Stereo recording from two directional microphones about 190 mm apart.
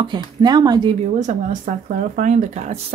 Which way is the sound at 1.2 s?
45° right (ahead or behind).